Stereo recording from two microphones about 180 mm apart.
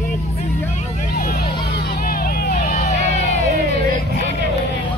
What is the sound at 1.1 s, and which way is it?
Vehicle, 55° left (ahead or behind).